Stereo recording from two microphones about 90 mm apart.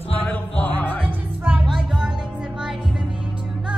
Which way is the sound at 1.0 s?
15° right (ahead or behind).